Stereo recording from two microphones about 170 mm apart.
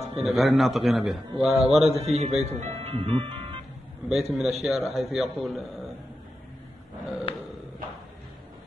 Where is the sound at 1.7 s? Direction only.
35° right (ahead or behind).